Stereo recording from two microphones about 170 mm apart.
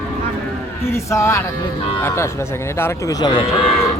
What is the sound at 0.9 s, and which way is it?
Speech, 15° left (ahead or behind).